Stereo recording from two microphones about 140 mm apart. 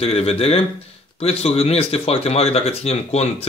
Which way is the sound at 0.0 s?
45° left (ahead or behind).